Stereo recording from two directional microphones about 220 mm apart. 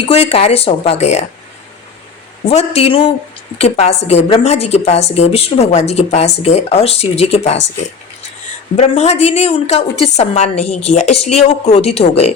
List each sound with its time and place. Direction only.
0.0 s a woman's voice: 30° left (ahead or behind)
2.5 s a woman's voice: 25° left (ahead or behind)
8.7 s a woman's voice: 30° left (ahead or behind)